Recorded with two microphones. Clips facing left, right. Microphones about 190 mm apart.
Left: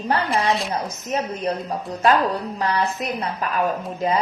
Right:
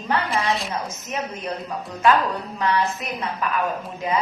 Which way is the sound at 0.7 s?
35° left (ahead or behind).